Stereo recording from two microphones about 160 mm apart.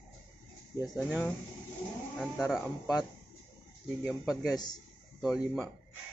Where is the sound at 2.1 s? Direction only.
Centre (ahead or behind).